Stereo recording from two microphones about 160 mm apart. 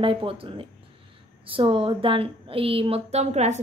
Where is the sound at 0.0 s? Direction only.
35° right (ahead or behind).